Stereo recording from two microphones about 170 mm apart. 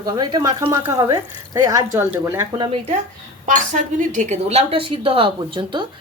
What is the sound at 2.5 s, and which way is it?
Speech, 35° right (ahead or behind).